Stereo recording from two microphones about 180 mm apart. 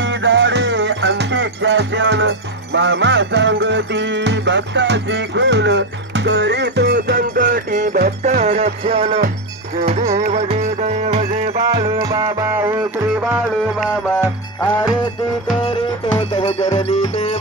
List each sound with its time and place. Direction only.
0.0 s music: 85° right; by 8.4 s 55° right (ahead or behind)
8.4 s music: 35° right (ahead or behind)
11.7 s music: 20° right (ahead or behind)
15.6 s music: 30° left (ahead or behind)